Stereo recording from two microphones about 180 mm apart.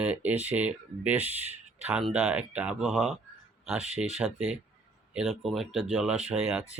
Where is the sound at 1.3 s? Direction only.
35° left (ahead or behind).